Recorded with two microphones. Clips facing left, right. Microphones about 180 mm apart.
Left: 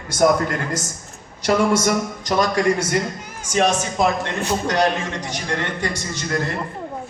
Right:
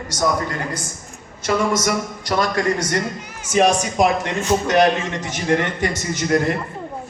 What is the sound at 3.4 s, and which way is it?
Speech, 10° right (ahead or behind).